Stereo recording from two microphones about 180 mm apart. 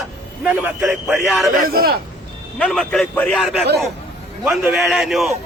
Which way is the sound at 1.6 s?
55° right (ahead or behind).